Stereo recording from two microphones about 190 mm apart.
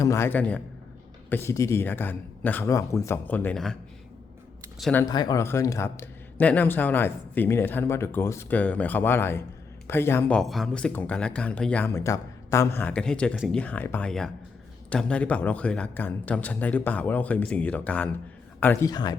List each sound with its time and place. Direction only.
0.0 s a man's voice: 15° left (ahead or behind)
4.8 s a man's voice: 10° left (ahead or behind)
5.0 s a man's voice: 20° left (ahead or behind)